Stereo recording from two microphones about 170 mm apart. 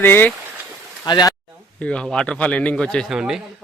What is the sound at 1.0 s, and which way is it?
Speech, 25° left (ahead or behind).